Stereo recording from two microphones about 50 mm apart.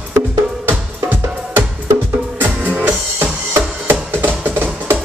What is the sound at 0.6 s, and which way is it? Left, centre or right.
Music, right.